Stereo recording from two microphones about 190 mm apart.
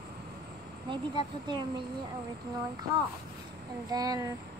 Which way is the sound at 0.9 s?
25° right (ahead or behind).